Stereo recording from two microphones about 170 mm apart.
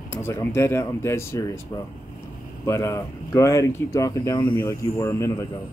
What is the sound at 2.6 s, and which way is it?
Speech, 20° left (ahead or behind).